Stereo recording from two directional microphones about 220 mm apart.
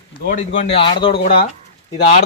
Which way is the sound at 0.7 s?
25° left (ahead or behind).